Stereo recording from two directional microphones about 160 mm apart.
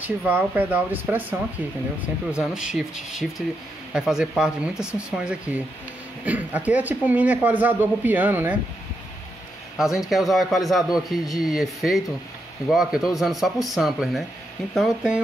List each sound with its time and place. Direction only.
0.0 s a man's voice: 10° right (ahead or behind)
9.8 s a man's voice: centre (ahead or behind)
12.6 s a man's voice: 5° right (ahead or behind)